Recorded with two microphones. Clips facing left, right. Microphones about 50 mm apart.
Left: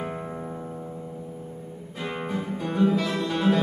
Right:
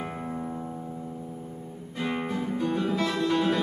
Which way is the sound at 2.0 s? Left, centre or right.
Centre.